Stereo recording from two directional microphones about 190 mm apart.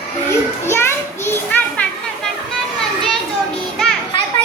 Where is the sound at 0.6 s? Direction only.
15° left (ahead or behind).